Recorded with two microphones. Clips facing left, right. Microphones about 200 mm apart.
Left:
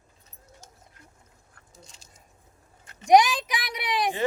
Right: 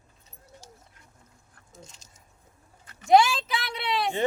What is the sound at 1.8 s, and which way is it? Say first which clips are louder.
Speech: even; 40° right (ahead or behind).